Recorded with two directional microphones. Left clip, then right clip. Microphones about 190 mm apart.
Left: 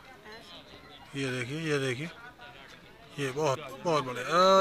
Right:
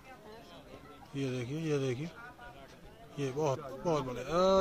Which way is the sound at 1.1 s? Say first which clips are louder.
Left 4 dB; centre (ahead or behind).